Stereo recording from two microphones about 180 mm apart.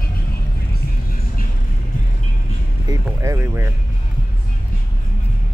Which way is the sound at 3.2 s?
15° right (ahead or behind).